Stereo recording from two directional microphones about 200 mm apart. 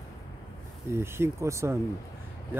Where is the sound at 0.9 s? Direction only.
10° right (ahead or behind).